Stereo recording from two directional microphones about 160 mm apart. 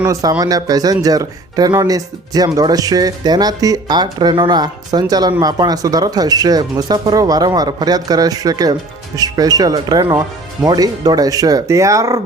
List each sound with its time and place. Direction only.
0.1 s speech: 25° right (ahead or behind)